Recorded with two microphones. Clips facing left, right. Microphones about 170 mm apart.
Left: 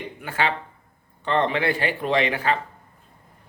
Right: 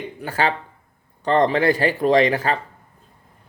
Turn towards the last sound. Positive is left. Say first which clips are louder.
# right 5 dB
turn(degrees=-40)  # may be behind; listen again after turning